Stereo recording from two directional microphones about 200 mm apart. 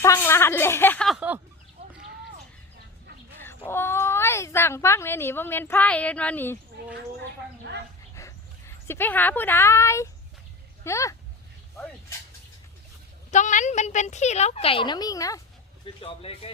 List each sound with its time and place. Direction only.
0.0 s speech: 15° left (ahead or behind); by 1.4 s 5° right (ahead or behind)
3.3 s speech: 10° left (ahead or behind)
8.1 s dog: 15° left (ahead or behind)
10.8 s speech: 15° left (ahead or behind)
13.3 s a woman's voice: 40° left (ahead or behind); by 15.4 s 15° left (ahead or behind)
16.0 s speech: 30° left (ahead or behind)